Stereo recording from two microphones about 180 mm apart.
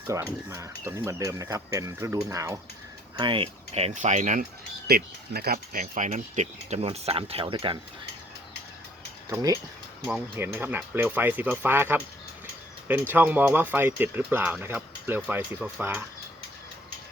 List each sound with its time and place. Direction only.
0.1 s speech: 15° right (ahead or behind); by 4.4 s 45° right (ahead or behind)
4.9 s speech: 60° right (ahead or behind); by 7.8 s 30° right (ahead or behind)
9.3 s speech: 15° right (ahead or behind)